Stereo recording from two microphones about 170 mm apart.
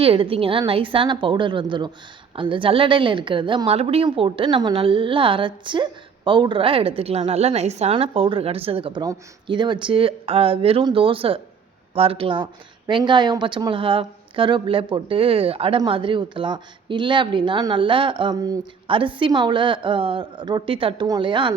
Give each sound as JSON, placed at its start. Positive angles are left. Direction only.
{"t": 0.0, "sound": "a woman's voice", "side_deg": -35}